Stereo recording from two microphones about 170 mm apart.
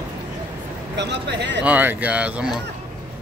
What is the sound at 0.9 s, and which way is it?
Speech, 90° right.